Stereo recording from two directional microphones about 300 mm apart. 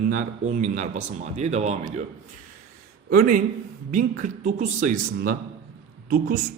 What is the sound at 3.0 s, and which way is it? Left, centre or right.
A man's voice, right.